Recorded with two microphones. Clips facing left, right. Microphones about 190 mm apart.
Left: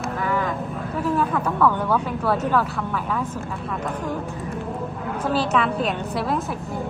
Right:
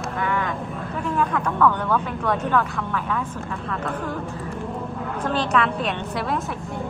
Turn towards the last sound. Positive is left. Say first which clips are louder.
# left 2 dB
turn(degrees=0)  # may be behind; listen again after turning